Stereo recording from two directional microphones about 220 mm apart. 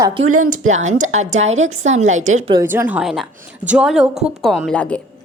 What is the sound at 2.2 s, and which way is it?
Speech, 65° right (ahead or behind).